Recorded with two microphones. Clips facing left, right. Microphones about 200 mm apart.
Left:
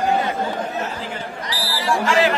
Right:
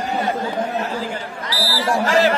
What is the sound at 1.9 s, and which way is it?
Speech, 40° right (ahead or behind).